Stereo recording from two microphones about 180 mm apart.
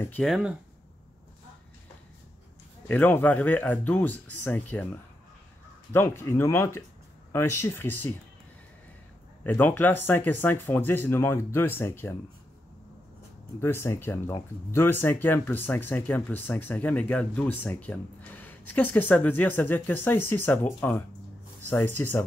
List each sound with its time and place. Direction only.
0.0 s speech: 10° left (ahead or behind)
0.3 s speech: 5° right (ahead or behind)
2.9 s speech: 10° left (ahead or behind)
5.9 s speech: 15° left (ahead or behind)
9.4 s speech: 10° left (ahead or behind)
13.6 s speech: 15° left (ahead or behind)